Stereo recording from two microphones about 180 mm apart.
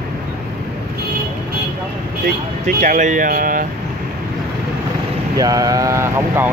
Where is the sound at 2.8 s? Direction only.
45° right (ahead or behind).